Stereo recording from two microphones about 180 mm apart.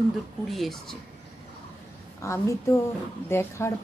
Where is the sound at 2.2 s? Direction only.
15° left (ahead or behind).